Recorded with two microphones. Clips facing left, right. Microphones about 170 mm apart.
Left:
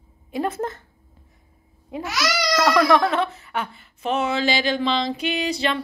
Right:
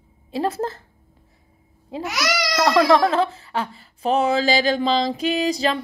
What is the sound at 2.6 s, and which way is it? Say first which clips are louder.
Speech: right 2 dB; 30° right (ahead or behind).